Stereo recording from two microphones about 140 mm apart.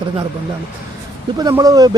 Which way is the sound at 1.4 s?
25° right (ahead or behind).